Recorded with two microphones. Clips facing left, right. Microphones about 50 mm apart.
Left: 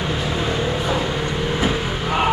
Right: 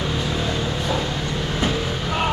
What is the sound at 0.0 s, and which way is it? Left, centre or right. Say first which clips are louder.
Vehicle: left 2 dB; centre.